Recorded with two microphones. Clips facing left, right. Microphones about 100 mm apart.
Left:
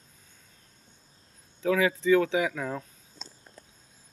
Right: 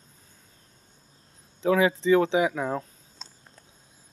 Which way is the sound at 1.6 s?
25° right (ahead or behind).